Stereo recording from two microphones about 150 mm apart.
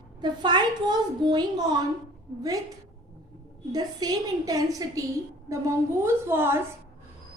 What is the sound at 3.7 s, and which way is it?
A woman's voice, 25° right (ahead or behind).